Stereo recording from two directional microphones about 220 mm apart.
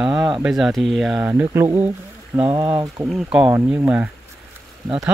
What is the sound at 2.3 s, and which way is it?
Speech, 25° right (ahead or behind).